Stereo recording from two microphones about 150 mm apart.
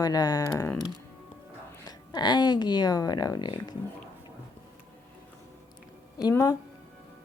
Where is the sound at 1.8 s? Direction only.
25° left (ahead or behind).